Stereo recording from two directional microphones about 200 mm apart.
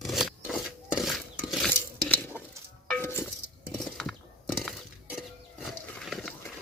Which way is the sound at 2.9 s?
10° left (ahead or behind).